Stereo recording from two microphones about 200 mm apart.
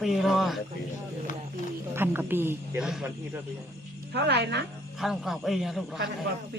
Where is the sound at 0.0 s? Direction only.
Centre (ahead or behind).